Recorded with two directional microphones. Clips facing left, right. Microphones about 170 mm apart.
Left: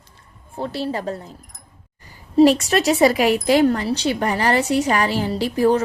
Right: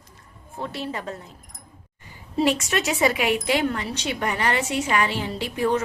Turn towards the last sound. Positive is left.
turn(degrees=35)  # may be behind; listen again after turning